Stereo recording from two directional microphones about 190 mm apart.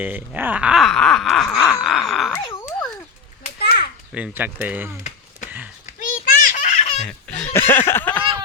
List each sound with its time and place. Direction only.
0.0 s speech: 10° right (ahead or behind)
1.6 s groan: 5° right (ahead or behind)
2.3 s a sound: 15° left (ahead or behind)
3.6 s children playing: 55° left (ahead or behind)
4.1 s speech: 10° right (ahead or behind)
5.5 s a sound: 5° right (ahead or behind)
5.8 s baby laughter: 45° left (ahead or behind)
7.0 s a sound: 5° left (ahead or behind)
7.3 s snicker: 10° left (ahead or behind)